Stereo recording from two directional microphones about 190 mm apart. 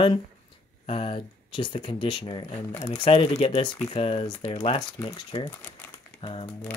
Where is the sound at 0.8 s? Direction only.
30° left (ahead or behind).